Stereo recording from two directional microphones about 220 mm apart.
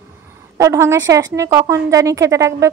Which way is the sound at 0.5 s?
15° right (ahead or behind).